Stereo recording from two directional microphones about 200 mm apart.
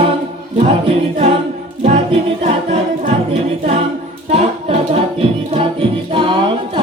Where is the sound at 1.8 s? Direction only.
30° right (ahead or behind).